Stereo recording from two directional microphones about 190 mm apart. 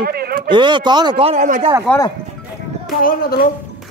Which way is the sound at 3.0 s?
50° left (ahead or behind).